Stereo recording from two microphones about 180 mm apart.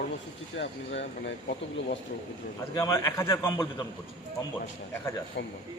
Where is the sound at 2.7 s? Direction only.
15° left (ahead or behind).